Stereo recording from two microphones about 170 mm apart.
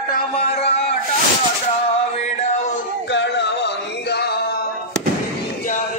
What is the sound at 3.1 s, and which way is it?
Music, 90° left.